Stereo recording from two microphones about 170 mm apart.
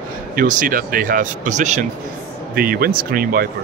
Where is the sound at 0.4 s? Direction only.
50° right (ahead or behind).